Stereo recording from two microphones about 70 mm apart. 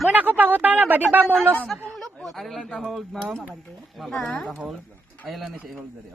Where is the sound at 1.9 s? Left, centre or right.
Centre.